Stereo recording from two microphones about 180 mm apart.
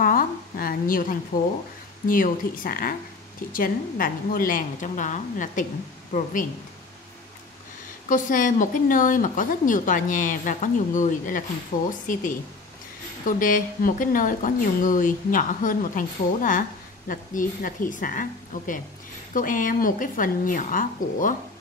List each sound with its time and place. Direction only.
0.0 s a sound: 50° left (ahead or behind)
1.3 s a woman's voice: 50° left (ahead or behind)
8.1 s a woman's voice: 45° left (ahead or behind)